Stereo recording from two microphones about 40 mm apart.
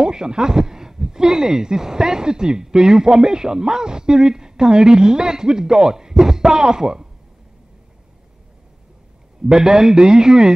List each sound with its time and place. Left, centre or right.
0.0 s speech: centre
9.5 s speech: centre